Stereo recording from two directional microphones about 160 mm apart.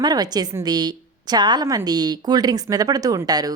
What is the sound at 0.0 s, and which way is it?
A woman's voice, 25° right (ahead or behind).